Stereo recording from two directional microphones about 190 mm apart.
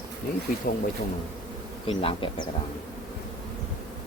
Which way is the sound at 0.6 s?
50° left (ahead or behind).